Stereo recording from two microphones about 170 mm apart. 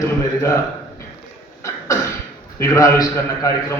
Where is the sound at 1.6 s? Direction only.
20° left (ahead or behind).